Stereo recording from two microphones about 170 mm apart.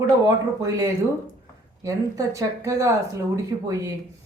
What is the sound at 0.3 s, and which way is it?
Speech, 20° right (ahead or behind).